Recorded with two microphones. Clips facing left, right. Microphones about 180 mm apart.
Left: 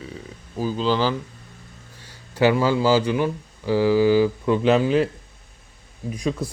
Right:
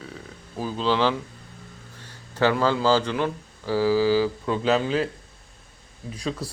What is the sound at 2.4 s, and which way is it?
Speech, 10° left (ahead or behind).